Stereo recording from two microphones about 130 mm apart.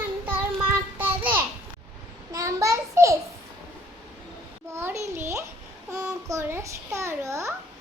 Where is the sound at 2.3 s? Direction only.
25° right (ahead or behind).